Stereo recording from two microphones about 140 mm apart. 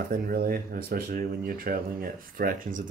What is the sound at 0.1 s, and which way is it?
Speech, 90° right.